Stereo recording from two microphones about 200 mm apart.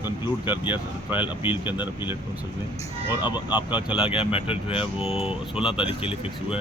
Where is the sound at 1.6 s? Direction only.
10° right (ahead or behind).